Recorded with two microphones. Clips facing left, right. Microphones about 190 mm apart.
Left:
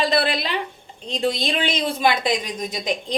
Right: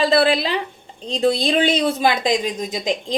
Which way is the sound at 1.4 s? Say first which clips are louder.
Right 6 dB; 35° right (ahead or behind).